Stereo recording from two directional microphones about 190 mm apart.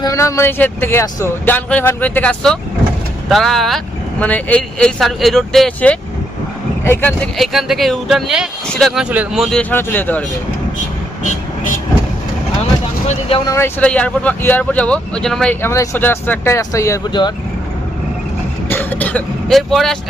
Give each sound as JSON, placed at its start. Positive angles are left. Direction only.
{"t": 0.0, "sound": "speech", "side_deg": 15}
{"t": 7.3, "sound": "speech", "side_deg": 0}
{"t": 13.1, "sound": "speech", "side_deg": 30}
{"t": 13.4, "sound": "speech", "side_deg": 15}
{"t": 18.7, "sound": "vehicle", "side_deg": 10}